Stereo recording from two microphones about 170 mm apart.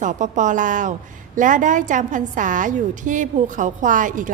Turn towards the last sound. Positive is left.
turn(degrees=-50)  # may be behind; listen again after turning